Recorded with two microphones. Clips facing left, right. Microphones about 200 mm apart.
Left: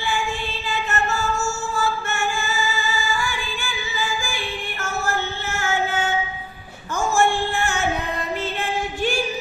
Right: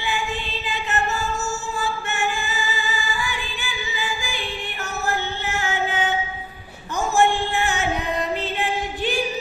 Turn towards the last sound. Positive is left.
turn(degrees=-15)  # may be behind; listen again after turning